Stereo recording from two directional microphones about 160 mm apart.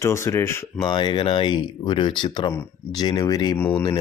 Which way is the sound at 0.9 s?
30° left (ahead or behind).